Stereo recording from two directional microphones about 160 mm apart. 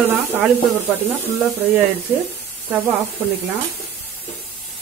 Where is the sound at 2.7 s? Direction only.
10° right (ahead or behind).